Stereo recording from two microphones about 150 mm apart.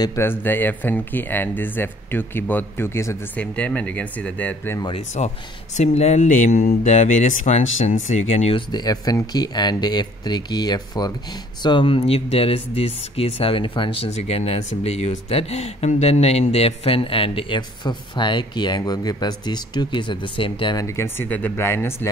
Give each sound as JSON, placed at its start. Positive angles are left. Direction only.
{"t": 0.0, "sound": "speech", "side_deg": 20}
{"t": 4.9, "sound": "speech", "side_deg": 50}
{"t": 6.8, "sound": "speech", "side_deg": 50}
{"t": 8.7, "sound": "speech", "side_deg": 25}
{"t": 20.8, "sound": "speech", "side_deg": 15}